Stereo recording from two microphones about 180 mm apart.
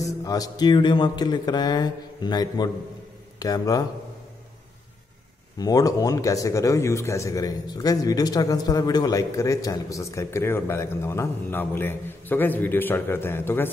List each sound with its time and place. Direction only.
0.0 s speech: 20° left (ahead or behind)
5.6 s speech: 20° left (ahead or behind)